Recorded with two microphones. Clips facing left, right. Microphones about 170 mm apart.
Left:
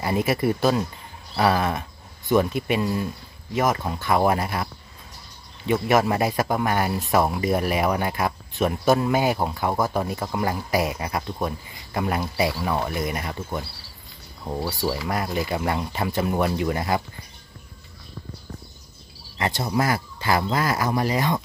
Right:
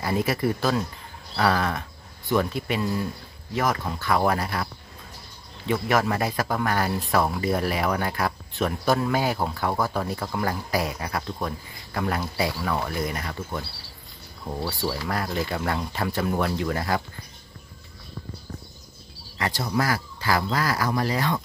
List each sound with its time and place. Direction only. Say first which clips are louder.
0.0 s speech: left 2 dB; 20° left (ahead or behind)
5.7 s speech: left 3 dB; 20° left (ahead or behind)
19.3 s speech: left 2 dB; 25° left (ahead or behind)